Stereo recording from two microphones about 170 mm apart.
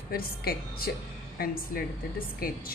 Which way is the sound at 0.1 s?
65° left (ahead or behind).